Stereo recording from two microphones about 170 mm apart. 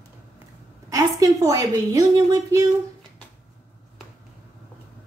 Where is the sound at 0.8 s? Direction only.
20° right (ahead or behind).